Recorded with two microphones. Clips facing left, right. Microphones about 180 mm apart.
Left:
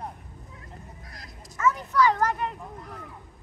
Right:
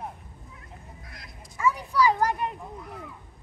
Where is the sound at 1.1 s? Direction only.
40° left (ahead or behind).